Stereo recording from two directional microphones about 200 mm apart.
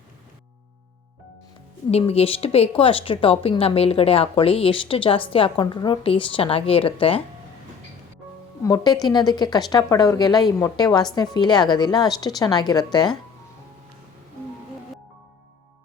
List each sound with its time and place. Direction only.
1.9 s a woman's voice: 30° left (ahead or behind)
8.6 s a woman's voice: 20° left (ahead or behind)